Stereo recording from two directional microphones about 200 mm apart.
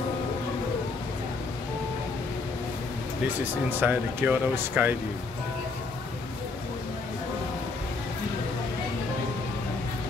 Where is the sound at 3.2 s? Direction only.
10° right (ahead or behind).